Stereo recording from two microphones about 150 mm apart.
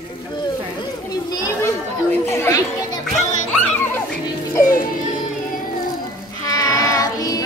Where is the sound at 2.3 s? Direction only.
20° left (ahead or behind).